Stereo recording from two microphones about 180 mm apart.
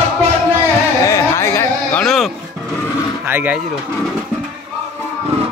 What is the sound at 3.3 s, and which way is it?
Speech, 10° right (ahead or behind).